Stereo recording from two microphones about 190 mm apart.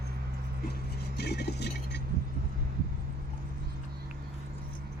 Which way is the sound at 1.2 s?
60° left (ahead or behind).